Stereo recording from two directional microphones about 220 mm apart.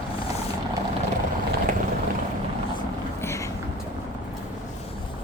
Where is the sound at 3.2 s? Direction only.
10° left (ahead or behind).